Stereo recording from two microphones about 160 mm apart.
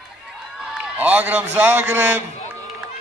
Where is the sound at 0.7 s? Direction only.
10° right (ahead or behind).